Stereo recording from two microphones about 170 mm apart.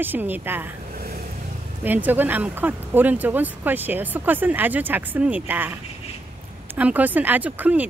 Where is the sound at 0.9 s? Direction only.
60° right (ahead or behind).